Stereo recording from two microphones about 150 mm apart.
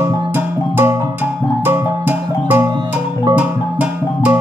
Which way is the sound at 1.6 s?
15° right (ahead or behind).